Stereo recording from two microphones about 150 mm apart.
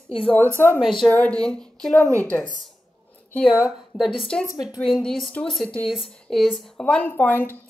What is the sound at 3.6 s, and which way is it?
A woman's voice, 5° right (ahead or behind).